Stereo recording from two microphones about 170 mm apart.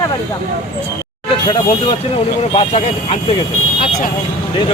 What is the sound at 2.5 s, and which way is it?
Speech, 35° left (ahead or behind).